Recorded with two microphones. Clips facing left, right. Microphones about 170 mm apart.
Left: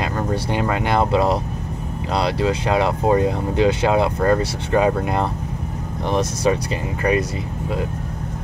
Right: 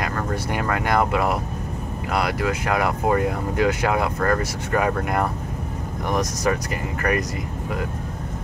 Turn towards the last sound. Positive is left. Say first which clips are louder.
# left 4 dB
turn(degrees=25)  # may be behind; listen again after turning